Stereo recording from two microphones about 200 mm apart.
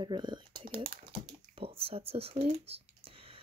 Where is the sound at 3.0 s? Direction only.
30° right (ahead or behind).